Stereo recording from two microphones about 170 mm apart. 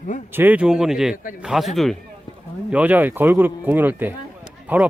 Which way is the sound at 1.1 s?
55° left (ahead or behind).